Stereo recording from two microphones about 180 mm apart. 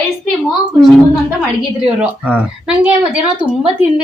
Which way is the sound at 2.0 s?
5° right (ahead or behind).